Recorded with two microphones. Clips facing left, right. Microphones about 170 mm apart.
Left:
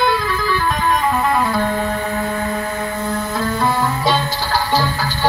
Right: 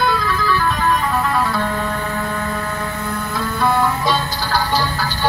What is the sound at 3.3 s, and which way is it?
Music, 15° left (ahead or behind).